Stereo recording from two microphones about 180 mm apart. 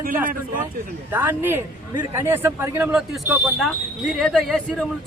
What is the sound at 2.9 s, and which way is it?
Speech, centre (ahead or behind).